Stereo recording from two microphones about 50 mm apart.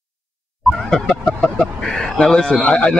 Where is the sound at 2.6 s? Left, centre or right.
Left.